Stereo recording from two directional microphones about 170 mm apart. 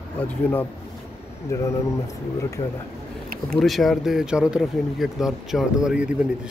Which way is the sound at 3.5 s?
Centre (ahead or behind).